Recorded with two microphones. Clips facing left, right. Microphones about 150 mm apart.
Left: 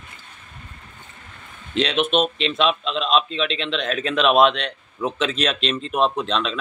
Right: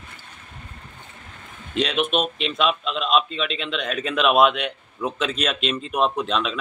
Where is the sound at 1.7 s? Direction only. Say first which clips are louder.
Left 2 dB; centre (ahead or behind).